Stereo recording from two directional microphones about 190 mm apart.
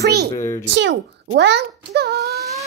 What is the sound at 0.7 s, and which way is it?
A child's voice, 65° right (ahead or behind).